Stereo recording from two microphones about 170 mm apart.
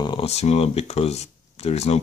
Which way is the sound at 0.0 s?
25° left (ahead or behind).